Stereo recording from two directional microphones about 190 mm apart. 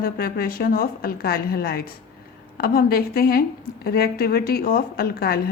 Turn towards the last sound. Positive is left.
turn(degrees=55)  # may be behind; listen again after turning